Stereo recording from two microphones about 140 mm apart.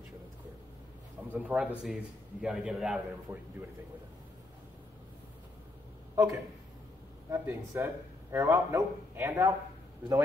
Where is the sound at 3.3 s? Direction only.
15° right (ahead or behind).